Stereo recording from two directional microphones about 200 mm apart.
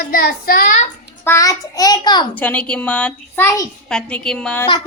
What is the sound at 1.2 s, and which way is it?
A child's voice, 15° left (ahead or behind).